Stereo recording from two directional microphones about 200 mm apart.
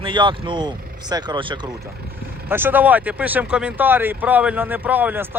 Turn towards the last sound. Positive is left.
turn(degrees=-10)  # may be behind; listen again after turning